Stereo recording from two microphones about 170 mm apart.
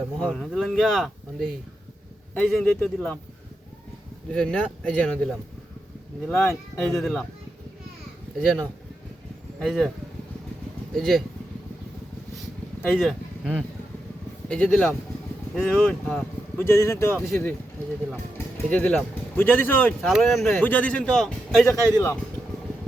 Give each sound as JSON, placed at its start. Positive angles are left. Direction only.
{"t": 0.2, "sound": "a man's voice", "side_deg": 5}
{"t": 4.3, "sound": "a man's voice", "side_deg": 5}
{"t": 8.4, "sound": "a man's voice", "side_deg": 5}
{"t": 10.9, "sound": "a man's voice", "side_deg": 0}
{"t": 12.8, "sound": "speech", "side_deg": 0}
{"t": 14.4, "sound": "speech", "side_deg": 5}
{"t": 16.6, "sound": "speech", "side_deg": 15}
{"t": 20.1, "sound": "a man's voice", "side_deg": 0}
{"t": 21.9, "sound": "speech", "side_deg": 15}